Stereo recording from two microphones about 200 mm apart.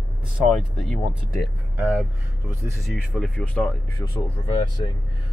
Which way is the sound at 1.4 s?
10° right (ahead or behind).